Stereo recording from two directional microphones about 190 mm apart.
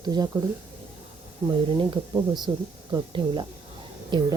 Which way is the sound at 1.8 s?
25° right (ahead or behind).